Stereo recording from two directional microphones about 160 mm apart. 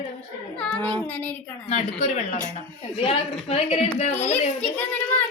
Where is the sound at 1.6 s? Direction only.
45° left (ahead or behind).